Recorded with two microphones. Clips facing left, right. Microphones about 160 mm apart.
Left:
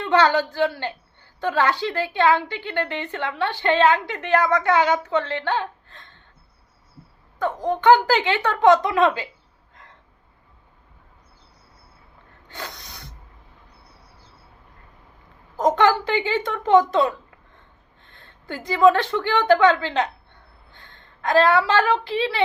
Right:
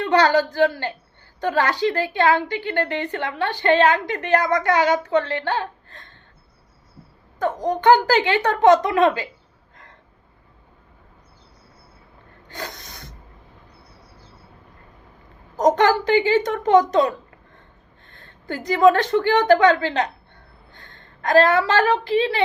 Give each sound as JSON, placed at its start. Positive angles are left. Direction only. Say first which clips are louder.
{"t": 0.0, "sound": "a woman's voice", "louder": "right 1 dB", "side_deg": -40}
{"t": 7.7, "sound": "a woman's voice", "louder": "even", "side_deg": -45}
{"t": 12.5, "sound": "a sound", "louder": "right 2 dB", "side_deg": -45}
{"t": 15.5, "sound": "a woman's voice", "louder": "right 2 dB", "side_deg": -45}
{"t": 20.7, "sound": "a sound", "louder": "right 2 dB", "side_deg": -50}
{"t": 22.0, "sound": "a woman's voice", "louder": "right 4 dB", "side_deg": -45}